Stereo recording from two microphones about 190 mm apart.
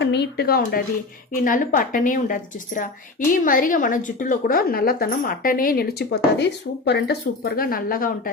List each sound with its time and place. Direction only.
0.0 s a woman's voice: 60° left (ahead or behind)